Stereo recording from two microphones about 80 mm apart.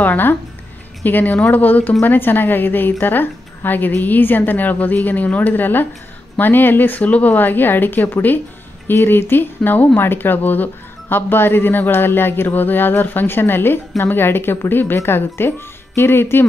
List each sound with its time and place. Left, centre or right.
0.0 s speech: left